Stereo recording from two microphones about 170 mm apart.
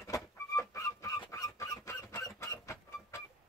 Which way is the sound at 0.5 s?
15° left (ahead or behind).